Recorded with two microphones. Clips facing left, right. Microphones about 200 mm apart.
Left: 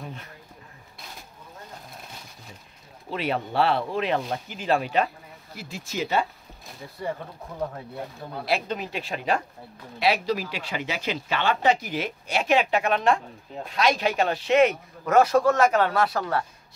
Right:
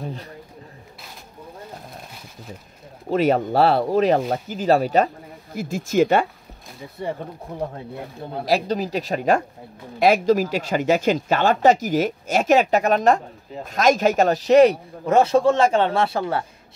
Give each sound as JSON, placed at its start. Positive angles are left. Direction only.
{"t": 0.0, "sound": "a sound", "side_deg": -35}
{"t": 3.1, "sound": "speech", "side_deg": -45}
{"t": 7.0, "sound": "a man's voice", "side_deg": -25}
{"t": 8.5, "sound": "a man's voice", "side_deg": -35}